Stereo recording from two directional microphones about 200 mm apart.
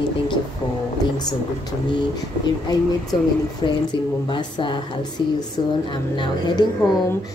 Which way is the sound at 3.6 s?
25° left (ahead or behind).